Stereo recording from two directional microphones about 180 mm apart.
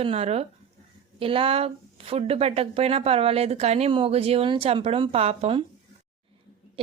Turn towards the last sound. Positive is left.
turn(degrees=-35)  # may be behind; listen again after turning